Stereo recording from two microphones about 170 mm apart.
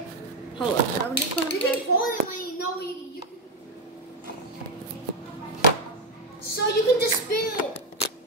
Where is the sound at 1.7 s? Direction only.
55° left (ahead or behind).